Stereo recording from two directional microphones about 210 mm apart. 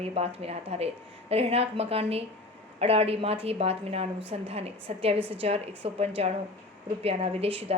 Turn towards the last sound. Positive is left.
turn(degrees=-30)  # may be behind; listen again after turning